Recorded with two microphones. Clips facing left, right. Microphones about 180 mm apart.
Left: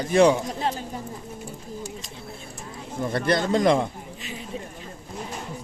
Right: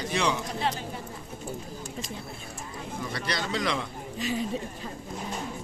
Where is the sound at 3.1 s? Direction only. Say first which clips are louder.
Left 10 dB; 50° left (ahead or behind).